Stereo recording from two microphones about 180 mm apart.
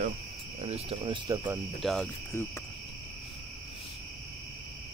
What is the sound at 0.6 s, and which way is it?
Speech, 35° right (ahead or behind).